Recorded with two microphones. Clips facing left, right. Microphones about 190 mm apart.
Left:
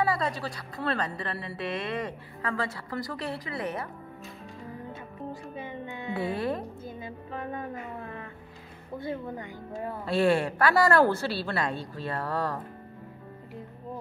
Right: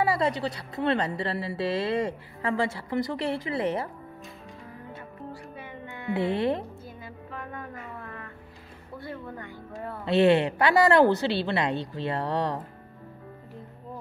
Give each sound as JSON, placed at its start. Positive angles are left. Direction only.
{"t": 0.0, "sound": "speech", "side_deg": -25}
{"t": 5.3, "sound": "music", "side_deg": 20}
{"t": 6.1, "sound": "speech", "side_deg": -25}
{"t": 7.0, "sound": "music", "side_deg": 25}
{"t": 8.9, "sound": "speech", "side_deg": 20}
{"t": 10.0, "sound": "speech", "side_deg": -25}